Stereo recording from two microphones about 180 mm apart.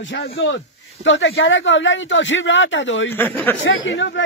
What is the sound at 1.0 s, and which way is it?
A man's voice, 90° left.